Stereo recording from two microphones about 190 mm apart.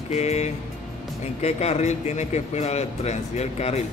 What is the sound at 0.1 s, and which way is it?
Speech, 35° left (ahead or behind).